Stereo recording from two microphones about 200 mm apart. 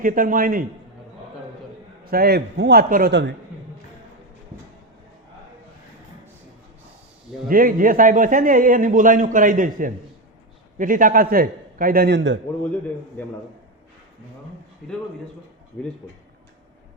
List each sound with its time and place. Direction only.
0.0 s a man's voice: 45° right (ahead or behind)
2.0 s a man's voice: 50° right (ahead or behind)
7.4 s a man's voice: 45° right (ahead or behind); by 12.4 s 60° right (ahead or behind)